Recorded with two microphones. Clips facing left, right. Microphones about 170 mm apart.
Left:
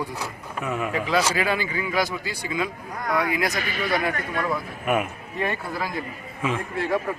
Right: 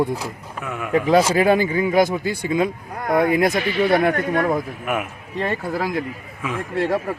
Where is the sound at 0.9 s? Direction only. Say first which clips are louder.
Right 9 dB; 50° right (ahead or behind).